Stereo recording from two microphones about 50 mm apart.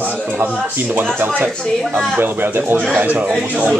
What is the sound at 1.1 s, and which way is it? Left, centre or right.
Speech, right.